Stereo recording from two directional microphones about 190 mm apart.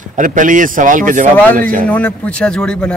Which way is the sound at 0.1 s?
45° right (ahead or behind).